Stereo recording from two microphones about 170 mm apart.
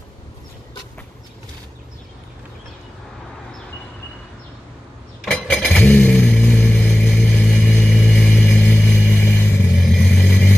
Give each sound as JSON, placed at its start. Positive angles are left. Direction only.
{"t": 5.2, "sound": "vehicle", "side_deg": 5}